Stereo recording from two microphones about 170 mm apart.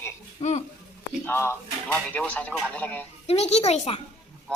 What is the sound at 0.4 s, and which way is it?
Speech, 40° left (ahead or behind).